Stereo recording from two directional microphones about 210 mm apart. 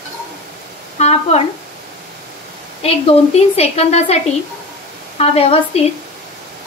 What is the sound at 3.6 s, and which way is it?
Speech, 30° left (ahead or behind).